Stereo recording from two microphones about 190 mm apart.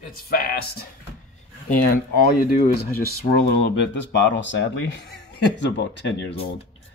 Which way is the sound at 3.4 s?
70° left (ahead or behind).